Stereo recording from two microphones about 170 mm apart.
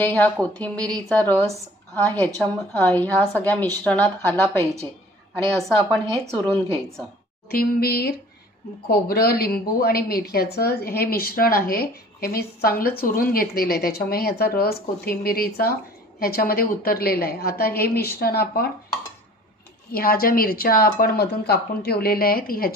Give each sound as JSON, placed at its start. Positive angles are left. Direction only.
{"t": 0.0, "sound": "a woman's voice", "side_deg": 10}
{"t": 5.6, "sound": "a woman's voice", "side_deg": 0}
{"t": 7.4, "sound": "a woman's voice", "side_deg": 65}
{"t": 19.9, "sound": "a woman's voice", "side_deg": 60}